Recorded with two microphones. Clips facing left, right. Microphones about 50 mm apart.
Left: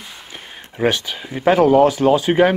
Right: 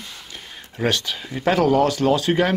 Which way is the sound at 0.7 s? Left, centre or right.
Centre.